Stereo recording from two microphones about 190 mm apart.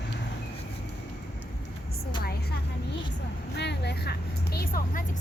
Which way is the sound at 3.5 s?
65° left (ahead or behind).